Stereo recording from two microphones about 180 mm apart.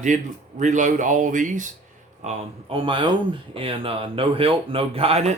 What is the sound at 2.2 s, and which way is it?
Speech, 30° right (ahead or behind).